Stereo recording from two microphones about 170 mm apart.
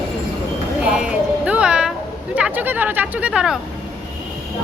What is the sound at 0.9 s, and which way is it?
Music, 5° right (ahead or behind).